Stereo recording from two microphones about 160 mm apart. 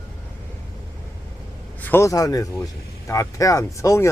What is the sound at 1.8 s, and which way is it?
Speech, 10° left (ahead or behind).